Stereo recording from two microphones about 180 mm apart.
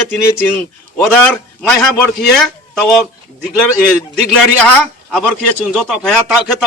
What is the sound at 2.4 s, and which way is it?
Speech, centre (ahead or behind).